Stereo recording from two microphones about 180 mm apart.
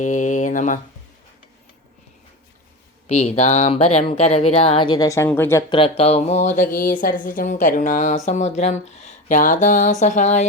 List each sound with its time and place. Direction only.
0.0 s a woman's voice: 45° left (ahead or behind)
3.1 s speech: 35° left (ahead or behind); by 5.6 s 15° left (ahead or behind)
6.0 s a woman's voice: 35° left (ahead or behind)